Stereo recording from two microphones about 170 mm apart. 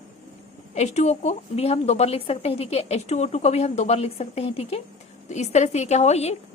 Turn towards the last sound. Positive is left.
turn(degrees=40)  # may be behind; listen again after turning